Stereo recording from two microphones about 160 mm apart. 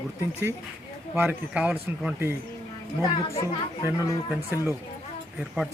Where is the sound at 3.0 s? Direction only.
20° left (ahead or behind).